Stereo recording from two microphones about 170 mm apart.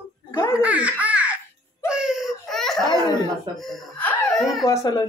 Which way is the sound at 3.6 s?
Centre (ahead or behind).